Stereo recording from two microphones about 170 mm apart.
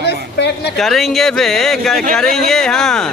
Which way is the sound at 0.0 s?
75° left (ahead or behind).